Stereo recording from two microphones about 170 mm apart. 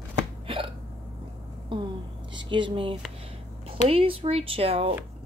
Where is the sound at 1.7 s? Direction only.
30° right (ahead or behind).